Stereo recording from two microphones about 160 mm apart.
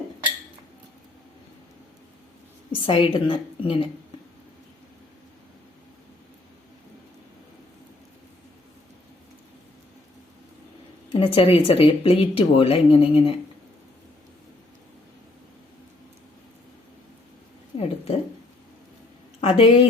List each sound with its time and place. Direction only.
2.7 s speech: 35° left (ahead or behind)
11.1 s speech: 35° left (ahead or behind)
17.7 s a sound: 40° left (ahead or behind)
19.4 s a woman's voice: 35° left (ahead or behind)